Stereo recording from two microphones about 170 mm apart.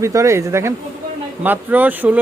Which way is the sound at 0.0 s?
15° right (ahead or behind).